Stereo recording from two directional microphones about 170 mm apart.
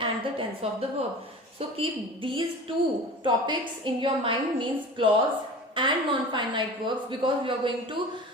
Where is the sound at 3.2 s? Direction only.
30° right (ahead or behind).